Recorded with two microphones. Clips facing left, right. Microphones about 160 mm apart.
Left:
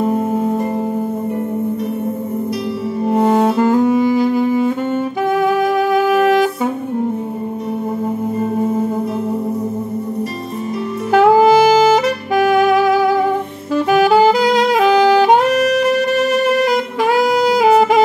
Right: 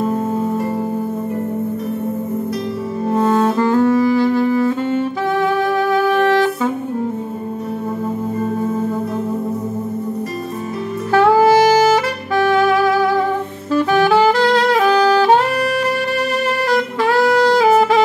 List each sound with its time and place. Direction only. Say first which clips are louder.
0.1 s music: left 2 dB; 15° left (ahead or behind)
3.1 s music: left 2 dB; 15° left (ahead or behind)
5.9 s music: left 2 dB; 15° left (ahead or behind)
8.5 s music: left 3 dB; 15° left (ahead or behind)
11.1 s saxophone: left 2 dB; 15° left (ahead or behind)